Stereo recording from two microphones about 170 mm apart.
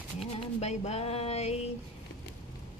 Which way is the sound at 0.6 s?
40° left (ahead or behind).